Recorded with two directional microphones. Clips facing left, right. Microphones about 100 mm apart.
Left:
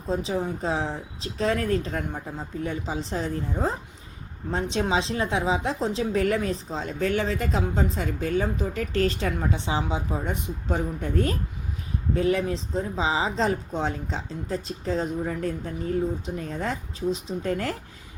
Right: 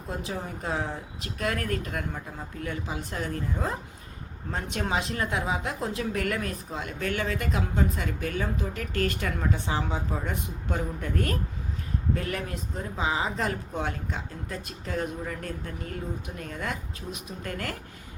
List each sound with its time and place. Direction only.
0.1 s speech: 20° left (ahead or behind)